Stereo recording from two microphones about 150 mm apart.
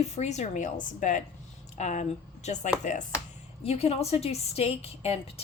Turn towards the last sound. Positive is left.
turn(degrees=40)  # may be behind; listen again after turning